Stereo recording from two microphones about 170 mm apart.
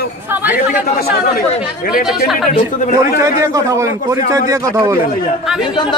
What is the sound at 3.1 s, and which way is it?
Speech, 20° right (ahead or behind).